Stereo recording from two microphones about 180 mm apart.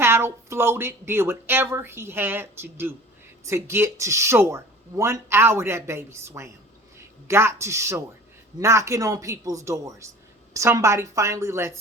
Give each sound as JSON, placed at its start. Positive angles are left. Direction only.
{"t": 0.0, "sound": "speech", "side_deg": -15}